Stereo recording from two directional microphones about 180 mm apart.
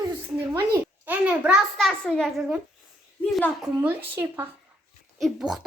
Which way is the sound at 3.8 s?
10° right (ahead or behind).